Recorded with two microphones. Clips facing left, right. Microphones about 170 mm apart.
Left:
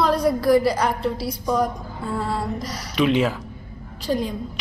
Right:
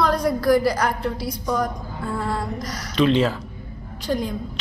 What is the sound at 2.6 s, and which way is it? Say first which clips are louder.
Speech: even; 30° left (ahead or behind).